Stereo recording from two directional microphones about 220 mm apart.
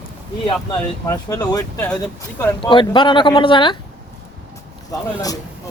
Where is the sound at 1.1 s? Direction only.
15° left (ahead or behind).